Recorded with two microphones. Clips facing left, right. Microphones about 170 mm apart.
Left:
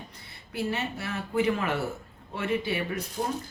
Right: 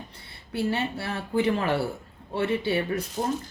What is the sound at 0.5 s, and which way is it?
A woman's voice, 30° right (ahead or behind).